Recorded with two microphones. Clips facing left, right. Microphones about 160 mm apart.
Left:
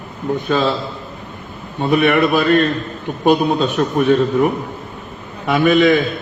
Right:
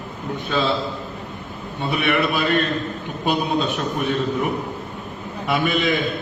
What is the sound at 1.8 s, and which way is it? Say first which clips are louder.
A man's voice: left 7 dB; 45° left (ahead or behind).